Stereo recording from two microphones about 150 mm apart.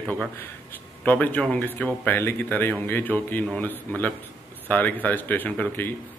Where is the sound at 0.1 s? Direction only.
10° left (ahead or behind).